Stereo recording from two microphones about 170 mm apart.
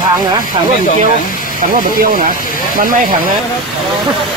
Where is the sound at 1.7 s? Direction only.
55° right (ahead or behind).